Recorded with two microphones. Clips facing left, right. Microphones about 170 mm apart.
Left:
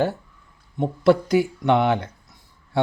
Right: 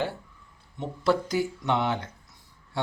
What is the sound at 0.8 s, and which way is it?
A man's voice, 60° left (ahead or behind).